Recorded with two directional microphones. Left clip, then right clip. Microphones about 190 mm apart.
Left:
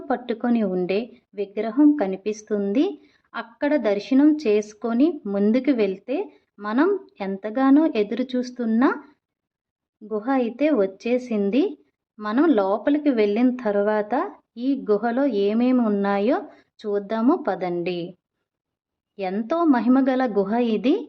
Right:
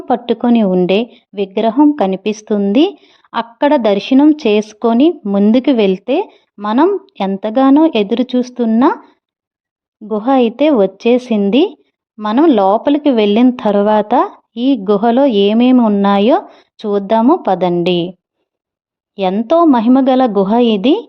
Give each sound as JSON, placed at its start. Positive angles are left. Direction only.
{"t": 0.1, "sound": "speech", "side_deg": -40}
{"t": 10.1, "sound": "speech", "side_deg": -40}
{"t": 19.1, "sound": "speech", "side_deg": -35}